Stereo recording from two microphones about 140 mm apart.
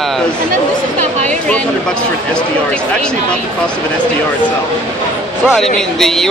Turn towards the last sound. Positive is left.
turn(degrees=5)  # may be behind; listen again after turning